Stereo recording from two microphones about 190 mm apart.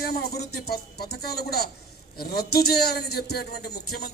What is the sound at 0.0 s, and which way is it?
A man's voice, 55° left (ahead or behind).